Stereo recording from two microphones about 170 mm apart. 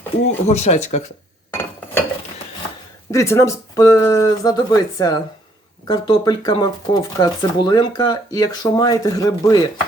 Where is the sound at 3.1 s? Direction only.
15° left (ahead or behind).